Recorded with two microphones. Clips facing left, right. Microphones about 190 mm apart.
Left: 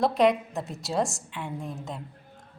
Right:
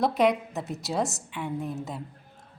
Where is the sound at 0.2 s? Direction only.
Centre (ahead or behind).